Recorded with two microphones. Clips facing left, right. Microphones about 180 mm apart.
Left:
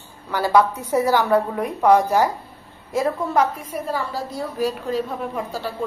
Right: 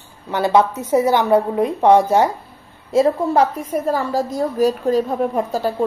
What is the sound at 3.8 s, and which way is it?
A woman's voice, 45° right (ahead or behind).